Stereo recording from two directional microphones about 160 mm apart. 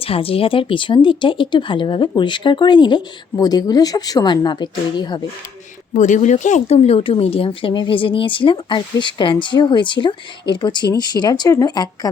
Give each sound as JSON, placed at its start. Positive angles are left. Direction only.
{"t": 0.0, "sound": "speech", "side_deg": 35}
{"t": 5.9, "sound": "speech", "side_deg": 50}